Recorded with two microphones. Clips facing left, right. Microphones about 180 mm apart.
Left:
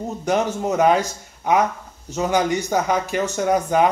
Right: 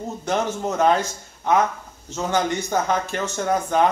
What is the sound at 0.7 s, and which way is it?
Speech, 15° left (ahead or behind).